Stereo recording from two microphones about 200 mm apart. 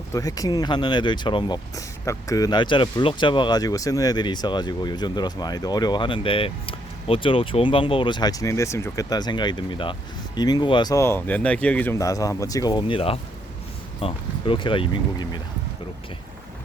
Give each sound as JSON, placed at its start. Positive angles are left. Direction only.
{"t": 0.1, "sound": "speech", "side_deg": 15}